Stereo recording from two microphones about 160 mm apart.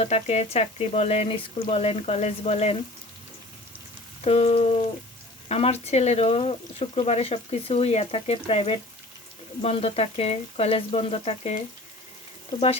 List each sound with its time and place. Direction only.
0.0 s speech: 40° left (ahead or behind)
4.2 s speech: 40° left (ahead or behind)